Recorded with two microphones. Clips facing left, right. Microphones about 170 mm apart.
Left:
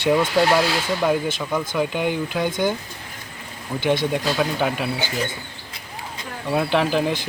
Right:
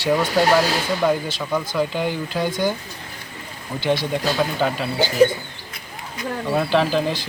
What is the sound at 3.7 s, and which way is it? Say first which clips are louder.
Speech: left 1 dB; 20° left (ahead or behind).